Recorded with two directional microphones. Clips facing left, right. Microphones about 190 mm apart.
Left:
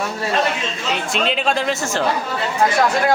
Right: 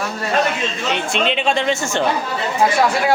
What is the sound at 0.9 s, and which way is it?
Speech, centre (ahead or behind).